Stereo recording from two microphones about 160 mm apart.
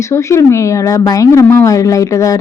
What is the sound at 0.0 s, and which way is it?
A woman's voice, 15° left (ahead or behind).